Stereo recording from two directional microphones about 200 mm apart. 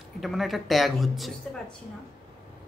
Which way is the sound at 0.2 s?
Centre (ahead or behind).